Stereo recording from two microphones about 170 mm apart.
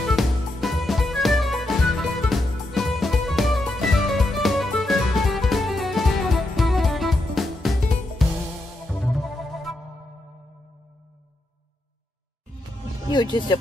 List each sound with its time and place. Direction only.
0.1 s music: centre (ahead or behind)
13.1 s speech: 25° left (ahead or behind)